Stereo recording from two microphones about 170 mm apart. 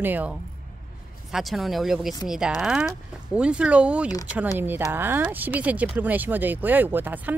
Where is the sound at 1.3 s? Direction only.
Centre (ahead or behind).